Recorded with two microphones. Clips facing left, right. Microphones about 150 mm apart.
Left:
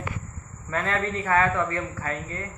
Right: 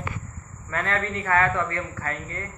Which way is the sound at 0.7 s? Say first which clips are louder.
Left 1 dB; 10° left (ahead or behind).